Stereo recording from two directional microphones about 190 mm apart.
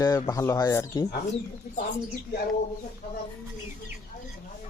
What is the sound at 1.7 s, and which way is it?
Speech, 50° left (ahead or behind).